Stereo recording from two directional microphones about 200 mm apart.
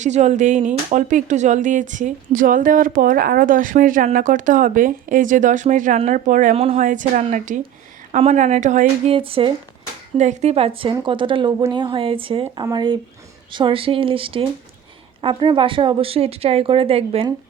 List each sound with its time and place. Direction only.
0.0 s speech: 35° right (ahead or behind)